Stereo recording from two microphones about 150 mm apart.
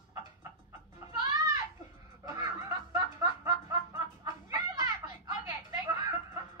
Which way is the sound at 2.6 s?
25° right (ahead or behind).